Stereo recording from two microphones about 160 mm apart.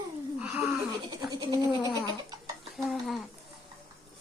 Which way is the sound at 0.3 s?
5° right (ahead or behind).